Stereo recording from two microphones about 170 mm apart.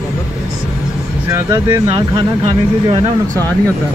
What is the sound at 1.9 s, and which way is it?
Speech, 30° right (ahead or behind).